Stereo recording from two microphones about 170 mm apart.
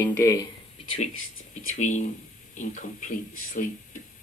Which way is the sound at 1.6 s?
45° left (ahead or behind).